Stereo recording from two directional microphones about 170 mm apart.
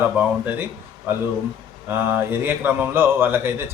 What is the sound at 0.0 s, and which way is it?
Speech, 10° right (ahead or behind).